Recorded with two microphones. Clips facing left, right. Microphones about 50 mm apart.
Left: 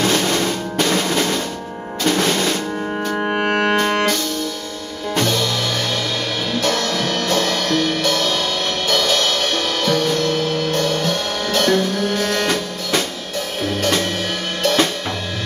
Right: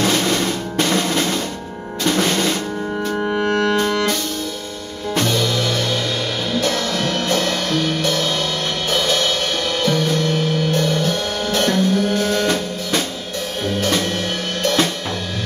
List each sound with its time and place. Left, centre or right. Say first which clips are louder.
0.0 s percussion: even; centre
2.0 s music: even; centre
3.1 s music: even; left
6.6 s music: left 2 dB; centre
8.9 s music: even; centre
10.3 s music: even; left
11.1 s music: even; centre
11.7 s music: right 1 dB; left
14.6 s drum kit: left 1 dB; centre